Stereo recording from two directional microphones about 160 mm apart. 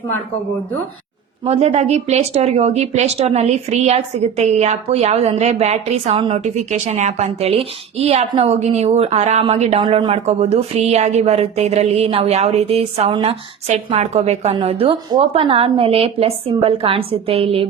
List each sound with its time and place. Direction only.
1.5 s speech: 40° right (ahead or behind)
9.8 s speech: 30° right (ahead or behind)
10.1 s a woman's voice: 40° right (ahead or behind)